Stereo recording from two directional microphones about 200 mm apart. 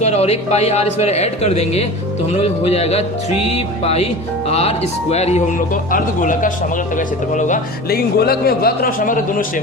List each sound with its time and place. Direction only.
0.0 s a man's voice: 30° left (ahead or behind)